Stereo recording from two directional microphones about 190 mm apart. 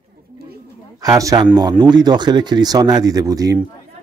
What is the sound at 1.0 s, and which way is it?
A man's voice, 20° right (ahead or behind).